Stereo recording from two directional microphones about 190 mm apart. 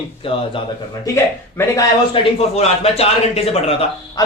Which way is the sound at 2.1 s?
35° left (ahead or behind).